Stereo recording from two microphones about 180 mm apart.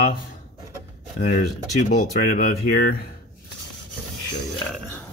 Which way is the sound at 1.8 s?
50° left (ahead or behind).